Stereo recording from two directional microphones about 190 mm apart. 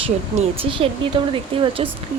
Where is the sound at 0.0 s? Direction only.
30° right (ahead or behind).